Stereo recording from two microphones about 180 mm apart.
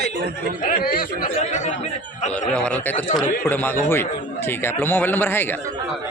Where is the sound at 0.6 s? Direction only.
55° left (ahead or behind).